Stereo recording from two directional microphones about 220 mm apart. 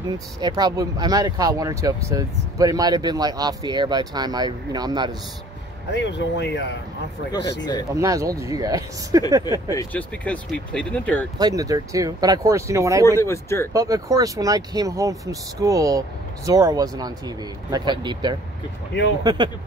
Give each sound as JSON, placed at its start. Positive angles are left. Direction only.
{"t": 0.4, "sound": "speech", "side_deg": -20}
{"t": 5.9, "sound": "speech", "side_deg": 50}
{"t": 7.9, "sound": "speech", "side_deg": -15}
{"t": 9.4, "sound": "speech", "side_deg": 15}
{"t": 11.3, "sound": "speech", "side_deg": -15}
{"t": 13.2, "sound": "speech", "side_deg": 10}
{"t": 13.7, "sound": "speech", "side_deg": -15}